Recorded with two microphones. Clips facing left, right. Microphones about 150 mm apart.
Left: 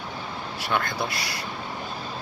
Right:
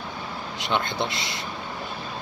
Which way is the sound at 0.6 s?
20° right (ahead or behind).